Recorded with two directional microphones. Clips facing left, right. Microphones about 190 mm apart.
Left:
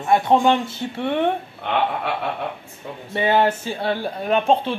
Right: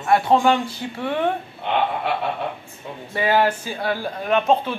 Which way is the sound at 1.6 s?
55° left (ahead or behind).